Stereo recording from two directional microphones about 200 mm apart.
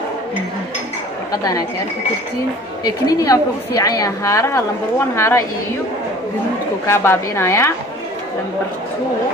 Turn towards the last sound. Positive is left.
turn(degrees=15)  # may be behind; listen again after turning